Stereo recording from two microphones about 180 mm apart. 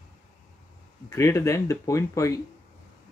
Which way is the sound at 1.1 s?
15° left (ahead or behind).